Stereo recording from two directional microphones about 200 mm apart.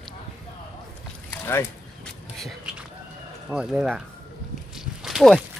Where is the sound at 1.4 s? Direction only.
10° left (ahead or behind).